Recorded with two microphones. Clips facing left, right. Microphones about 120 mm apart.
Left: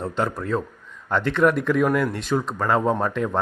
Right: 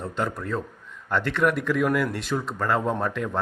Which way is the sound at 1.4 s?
45° left (ahead or behind).